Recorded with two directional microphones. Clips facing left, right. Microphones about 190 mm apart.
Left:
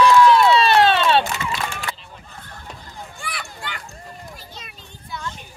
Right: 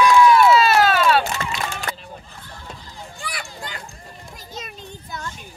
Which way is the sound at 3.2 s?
40° right (ahead or behind).